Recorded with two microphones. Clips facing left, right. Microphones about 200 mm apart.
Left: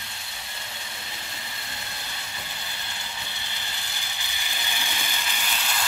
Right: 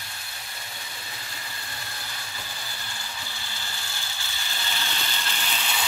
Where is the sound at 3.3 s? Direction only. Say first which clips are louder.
Even; 20° left (ahead or behind).